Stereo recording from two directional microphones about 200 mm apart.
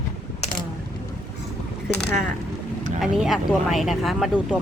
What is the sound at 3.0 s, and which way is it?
A woman's voice, centre (ahead or behind).